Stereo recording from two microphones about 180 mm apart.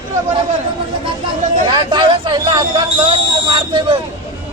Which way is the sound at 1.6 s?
25° right (ahead or behind).